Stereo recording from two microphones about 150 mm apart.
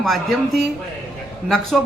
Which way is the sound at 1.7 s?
Centre (ahead or behind).